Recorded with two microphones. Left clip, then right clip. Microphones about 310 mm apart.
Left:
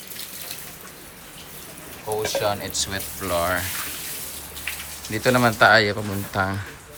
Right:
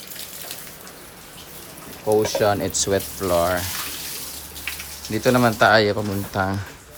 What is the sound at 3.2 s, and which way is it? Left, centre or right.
Speech, centre.